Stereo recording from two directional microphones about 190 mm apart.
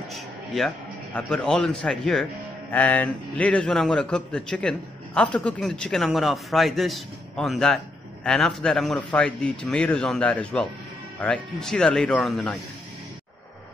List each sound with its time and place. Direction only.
0.1 s a man's voice: centre (ahead or behind)